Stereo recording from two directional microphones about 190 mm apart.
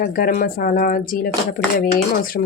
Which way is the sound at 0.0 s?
50° left (ahead or behind).